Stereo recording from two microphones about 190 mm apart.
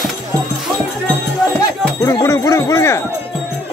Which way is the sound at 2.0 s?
15° left (ahead or behind).